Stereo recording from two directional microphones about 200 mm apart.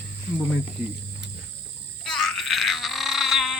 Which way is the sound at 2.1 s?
Centre (ahead or behind).